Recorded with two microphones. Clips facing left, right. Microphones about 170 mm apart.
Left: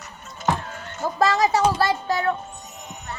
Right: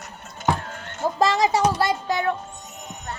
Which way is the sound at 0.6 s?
50° right (ahead or behind).